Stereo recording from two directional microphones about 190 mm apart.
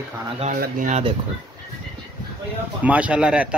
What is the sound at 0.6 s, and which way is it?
Speech, 40° right (ahead or behind).